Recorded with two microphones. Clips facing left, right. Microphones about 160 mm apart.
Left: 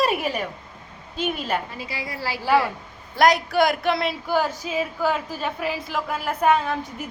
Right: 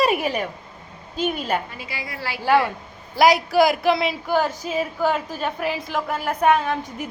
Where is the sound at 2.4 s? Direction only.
5° left (ahead or behind).